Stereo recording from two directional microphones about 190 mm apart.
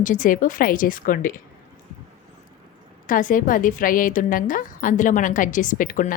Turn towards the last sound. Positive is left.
turn(degrees=45)  # may be behind; listen again after turning